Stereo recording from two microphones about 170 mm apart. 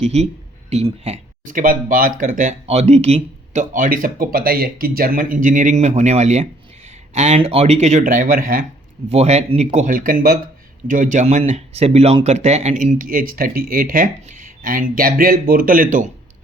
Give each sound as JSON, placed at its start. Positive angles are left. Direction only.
{"t": 0.0, "sound": "speech", "side_deg": -40}
{"t": 1.5, "sound": "speech", "side_deg": -55}
{"t": 9.0, "sound": "speech", "side_deg": -40}